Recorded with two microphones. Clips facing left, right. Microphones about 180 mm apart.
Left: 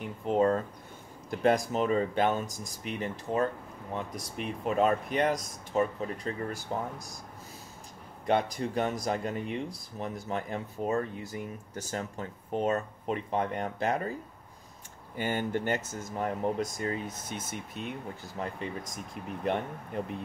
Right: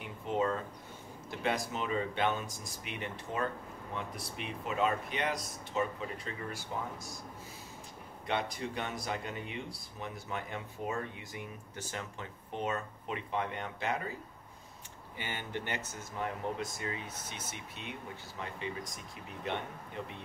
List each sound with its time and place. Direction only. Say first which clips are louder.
0.0 s a sound: left 7 dB; 45° left (ahead or behind)
1.4 s speech: left 9 dB; 45° left (ahead or behind)
8.3 s speech: left 7 dB; 45° left (ahead or behind)
15.1 s speech: left 9 dB; 45° left (ahead or behind)